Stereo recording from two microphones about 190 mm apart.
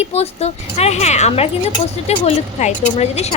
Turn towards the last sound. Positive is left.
turn(degrees=35)  # may be behind; listen again after turning